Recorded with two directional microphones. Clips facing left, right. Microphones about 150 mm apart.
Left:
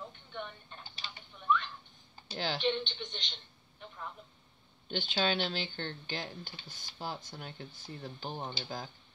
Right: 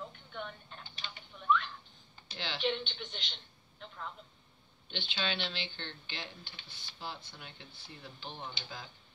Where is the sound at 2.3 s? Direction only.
45° left (ahead or behind).